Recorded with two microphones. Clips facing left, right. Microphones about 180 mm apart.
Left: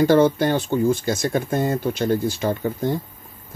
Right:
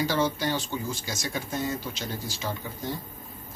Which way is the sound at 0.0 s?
55° left (ahead or behind).